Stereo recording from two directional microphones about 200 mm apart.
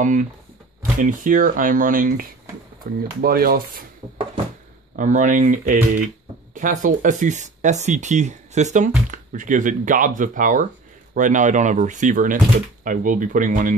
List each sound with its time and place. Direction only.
0.0 s speech: 40° right (ahead or behind)
4.9 s speech: 40° right (ahead or behind)